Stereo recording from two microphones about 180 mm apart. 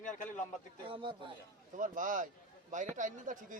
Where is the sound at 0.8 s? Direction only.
30° right (ahead or behind).